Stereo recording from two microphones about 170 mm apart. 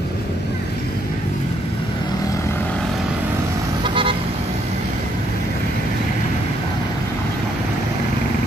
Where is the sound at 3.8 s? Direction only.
30° right (ahead or behind).